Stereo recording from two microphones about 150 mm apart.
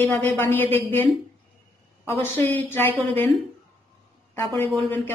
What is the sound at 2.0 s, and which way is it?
Speech, 15° left (ahead or behind).